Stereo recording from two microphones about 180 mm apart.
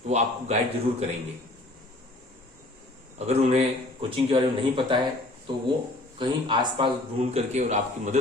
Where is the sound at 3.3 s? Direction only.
35° right (ahead or behind).